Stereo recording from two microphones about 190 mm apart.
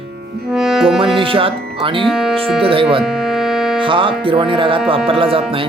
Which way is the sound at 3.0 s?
Centre (ahead or behind).